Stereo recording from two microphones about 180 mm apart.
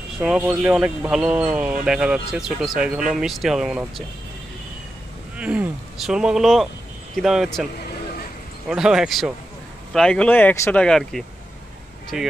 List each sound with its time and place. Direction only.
0.2 s speech: 5° right (ahead or behind)
5.4 s speech: 5° right (ahead or behind)
8.6 s speech: 5° right (ahead or behind)